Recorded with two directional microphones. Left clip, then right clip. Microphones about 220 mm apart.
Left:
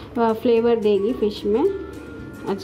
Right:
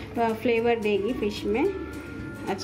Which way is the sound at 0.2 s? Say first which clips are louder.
Left 6 dB; 30° left (ahead or behind).